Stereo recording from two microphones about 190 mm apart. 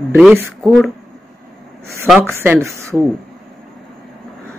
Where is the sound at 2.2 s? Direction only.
10° right (ahead or behind).